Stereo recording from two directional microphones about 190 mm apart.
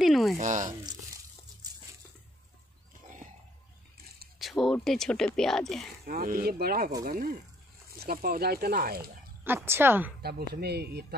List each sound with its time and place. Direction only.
0.0 s sizzle: centre (ahead or behind)
0.4 s speech: 40° right (ahead or behind)
4.4 s a sound: centre (ahead or behind)
4.7 s speech: centre (ahead or behind)
6.0 s speech: 50° right (ahead or behind)
9.4 s speech: 10° right (ahead or behind)
10.2 s speech: 55° right (ahead or behind)